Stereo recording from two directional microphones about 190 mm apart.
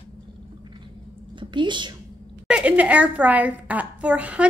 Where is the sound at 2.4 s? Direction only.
5° right (ahead or behind).